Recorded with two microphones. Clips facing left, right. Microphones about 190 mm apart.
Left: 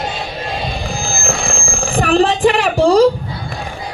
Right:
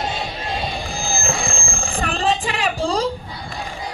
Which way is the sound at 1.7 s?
75° left (ahead or behind).